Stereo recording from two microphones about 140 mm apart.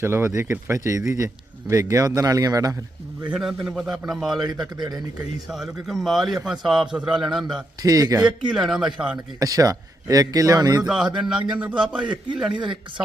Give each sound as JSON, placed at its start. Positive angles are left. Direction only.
{"t": 0.0, "sound": "a man's voice", "side_deg": -15}
{"t": 3.2, "sound": "a man's voice", "side_deg": -10}
{"t": 4.8, "sound": "a man's voice", "side_deg": -30}
{"t": 5.5, "sound": "a man's voice", "side_deg": 0}
{"t": 7.8, "sound": "a man's voice", "side_deg": -25}
{"t": 8.4, "sound": "a man's voice", "side_deg": -5}
{"t": 9.1, "sound": "a man's voice", "side_deg": -25}
{"t": 10.8, "sound": "a man's voice", "side_deg": -5}
{"t": 12.5, "sound": "speech", "side_deg": -35}